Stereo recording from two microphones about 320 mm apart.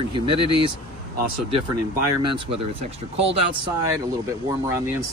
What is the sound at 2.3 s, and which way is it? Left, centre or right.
Speech, centre.